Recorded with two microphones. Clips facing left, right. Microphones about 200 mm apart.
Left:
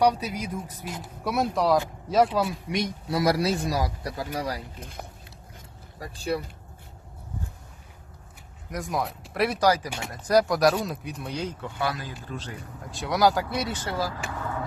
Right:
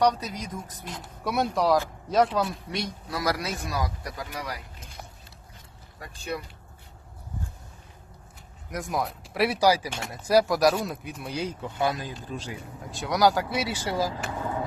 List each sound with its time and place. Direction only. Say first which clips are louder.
0.0 s speech: left 1 dB; 10° left (ahead or behind)
0.9 s speech: even; centre (ahead or behind)
3.1 s speech: left 6 dB; 25° left (ahead or behind)
6.0 s speech: left 5 dB; 30° left (ahead or behind)
8.7 s speech: even; centre (ahead or behind)
12.9 s speech: even; centre (ahead or behind); by 14.6 s 20° right (ahead or behind)